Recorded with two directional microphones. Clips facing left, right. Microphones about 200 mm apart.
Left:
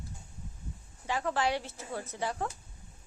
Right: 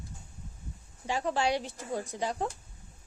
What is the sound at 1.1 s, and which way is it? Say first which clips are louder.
Speech: right 2 dB; 15° right (ahead or behind).